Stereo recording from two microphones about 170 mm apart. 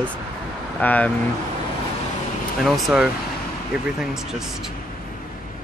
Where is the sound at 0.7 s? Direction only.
10° left (ahead or behind).